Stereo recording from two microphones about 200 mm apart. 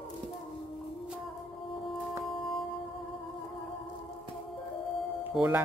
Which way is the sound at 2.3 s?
25° left (ahead or behind).